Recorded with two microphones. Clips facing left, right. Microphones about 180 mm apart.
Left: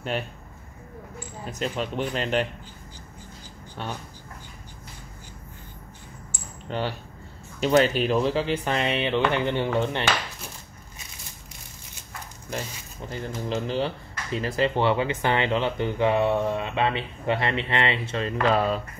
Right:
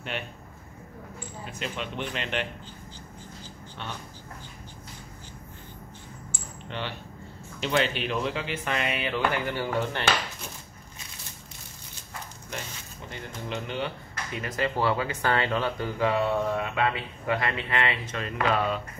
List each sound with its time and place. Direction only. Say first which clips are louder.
0.1 s speech: left 5 dB; 40° left (ahead or behind)
1.4 s speech: left 6 dB; 40° left (ahead or behind)
3.8 s speech: left 5 dB; 40° left (ahead or behind)
6.7 s speech: left 6 dB; 40° left (ahead or behind); by 10.0 s 25° left (ahead or behind)
13.1 s speech: left 6 dB; 35° left (ahead or behind)